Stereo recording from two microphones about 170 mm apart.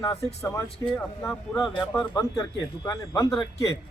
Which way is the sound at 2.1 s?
20° left (ahead or behind).